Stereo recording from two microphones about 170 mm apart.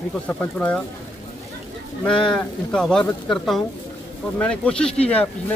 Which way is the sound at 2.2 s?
5° left (ahead or behind).